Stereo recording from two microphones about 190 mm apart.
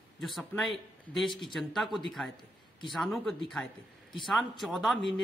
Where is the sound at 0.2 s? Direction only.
Centre (ahead or behind).